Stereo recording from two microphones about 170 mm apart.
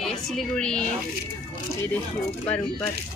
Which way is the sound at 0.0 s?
Centre (ahead or behind).